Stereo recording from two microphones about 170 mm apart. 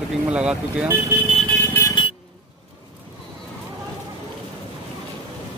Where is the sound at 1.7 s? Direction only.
20° left (ahead or behind).